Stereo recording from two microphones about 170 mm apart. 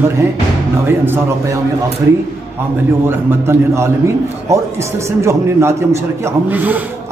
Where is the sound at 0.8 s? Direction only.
15° right (ahead or behind).